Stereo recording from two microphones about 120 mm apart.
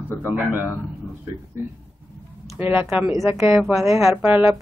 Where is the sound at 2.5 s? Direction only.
15° right (ahead or behind).